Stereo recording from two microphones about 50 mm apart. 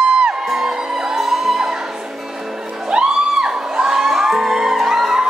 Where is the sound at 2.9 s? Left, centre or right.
Centre.